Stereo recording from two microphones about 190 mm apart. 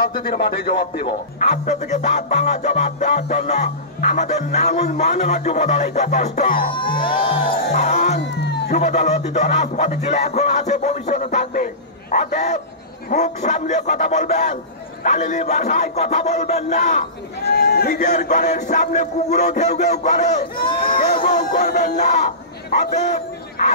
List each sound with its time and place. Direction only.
0.3 s speech: 60° left (ahead or behind)
1.4 s music: 40° left (ahead or behind)
7.0 s music: 25° left (ahead or behind)
7.7 s music: 40° left (ahead or behind)
8.4 s a sound: 65° left (ahead or behind)
8.7 s music: 40° left (ahead or behind)
17.5 s music: 55° left (ahead or behind); by 20.6 s 40° left (ahead or behind)
20.9 s music: 50° left (ahead or behind)
21.9 s music: 40° left (ahead or behind)